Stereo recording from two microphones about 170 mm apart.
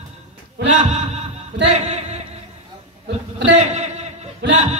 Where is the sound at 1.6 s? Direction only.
40° right (ahead or behind).